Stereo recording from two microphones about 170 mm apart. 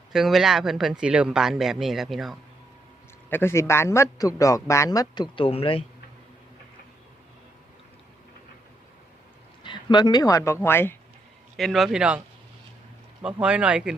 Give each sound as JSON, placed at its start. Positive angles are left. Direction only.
{"t": 0.1, "sound": "speech", "side_deg": 0}
{"t": 3.2, "sound": "a man's voice", "side_deg": 15}
{"t": 9.6, "sound": "a man's voice", "side_deg": 25}
{"t": 11.5, "sound": "speech", "side_deg": 0}
{"t": 13.2, "sound": "speech", "side_deg": -5}